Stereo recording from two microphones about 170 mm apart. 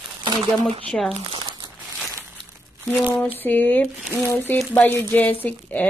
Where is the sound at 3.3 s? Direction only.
10° left (ahead or behind).